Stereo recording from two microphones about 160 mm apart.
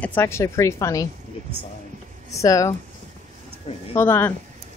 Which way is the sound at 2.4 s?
20° left (ahead or behind).